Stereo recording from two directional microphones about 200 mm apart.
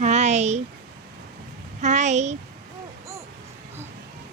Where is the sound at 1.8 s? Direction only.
35° right (ahead or behind).